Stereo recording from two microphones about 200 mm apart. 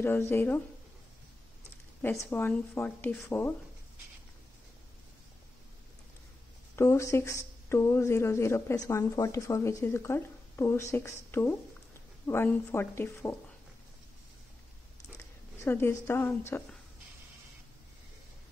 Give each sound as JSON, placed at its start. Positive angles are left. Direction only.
{"t": 0.0, "sound": "speech", "side_deg": 10}
{"t": 2.0, "sound": "speech", "side_deg": 10}
{"t": 6.7, "sound": "speech", "side_deg": 15}
{"t": 15.1, "sound": "speech", "side_deg": 15}